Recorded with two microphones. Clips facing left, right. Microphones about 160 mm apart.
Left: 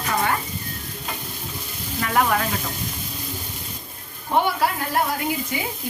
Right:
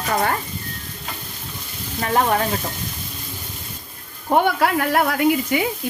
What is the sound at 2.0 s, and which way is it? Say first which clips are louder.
Speech: right 2 dB; 35° right (ahead or behind).